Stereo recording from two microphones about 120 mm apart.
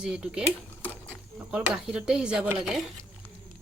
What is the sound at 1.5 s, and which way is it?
Speech, 10° right (ahead or behind).